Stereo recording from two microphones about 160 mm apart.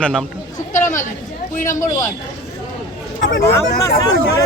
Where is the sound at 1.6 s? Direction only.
20° left (ahead or behind).